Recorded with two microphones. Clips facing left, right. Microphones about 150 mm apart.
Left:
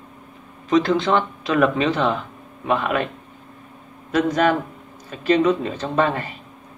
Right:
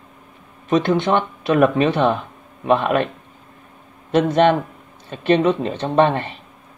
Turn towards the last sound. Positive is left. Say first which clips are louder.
# right 4 dB
turn(degrees=-25)  # may be behind; listen again after turning